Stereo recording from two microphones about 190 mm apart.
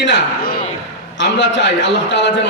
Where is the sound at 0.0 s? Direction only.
60° left (ahead or behind).